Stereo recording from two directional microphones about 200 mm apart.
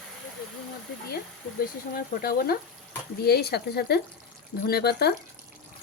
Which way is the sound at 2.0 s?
50° left (ahead or behind).